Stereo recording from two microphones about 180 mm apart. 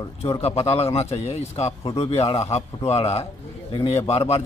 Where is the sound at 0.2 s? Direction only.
35° left (ahead or behind).